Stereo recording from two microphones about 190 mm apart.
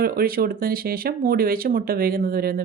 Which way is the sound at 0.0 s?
50° right (ahead or behind).